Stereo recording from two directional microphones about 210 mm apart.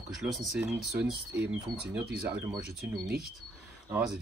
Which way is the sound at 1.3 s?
55° right (ahead or behind).